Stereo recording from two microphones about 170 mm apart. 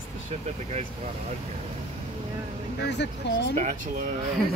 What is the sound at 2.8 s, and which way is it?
Speech, 90° left.